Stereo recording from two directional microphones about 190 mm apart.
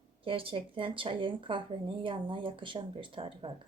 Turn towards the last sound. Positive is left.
turn(degrees=-30)  # may be behind; listen again after turning